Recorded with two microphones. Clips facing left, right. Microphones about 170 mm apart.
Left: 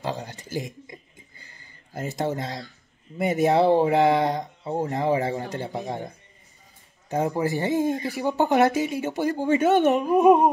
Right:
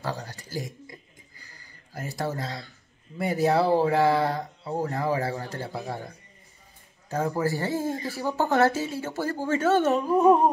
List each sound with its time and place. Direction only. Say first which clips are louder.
0.0 s speech: left 2 dB; 20° left (ahead or behind)
1.4 s a sound: left 1 dB; 25° left (ahead or behind)
3.2 s speech: left 3 dB; 20° left (ahead or behind)
7.1 s speech: left 2 dB; 20° left (ahead or behind)